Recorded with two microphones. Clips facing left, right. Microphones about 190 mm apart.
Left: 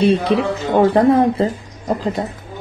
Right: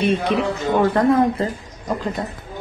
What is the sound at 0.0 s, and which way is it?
Speech, 35° left (ahead or behind).